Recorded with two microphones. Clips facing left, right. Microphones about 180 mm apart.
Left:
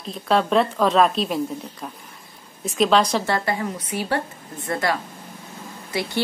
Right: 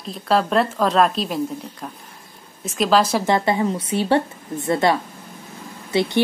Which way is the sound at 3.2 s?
20° right (ahead or behind).